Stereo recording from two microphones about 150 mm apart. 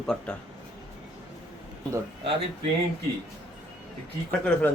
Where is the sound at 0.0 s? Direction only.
5° left (ahead or behind).